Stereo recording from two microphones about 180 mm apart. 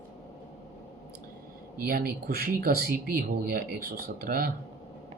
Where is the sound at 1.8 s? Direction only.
55° right (ahead or behind).